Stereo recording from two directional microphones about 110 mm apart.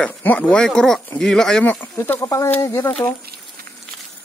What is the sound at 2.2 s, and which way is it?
Speech, 30° left (ahead or behind).